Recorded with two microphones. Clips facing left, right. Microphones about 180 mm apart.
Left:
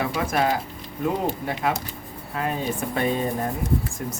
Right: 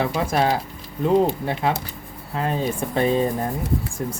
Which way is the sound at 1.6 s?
30° right (ahead or behind).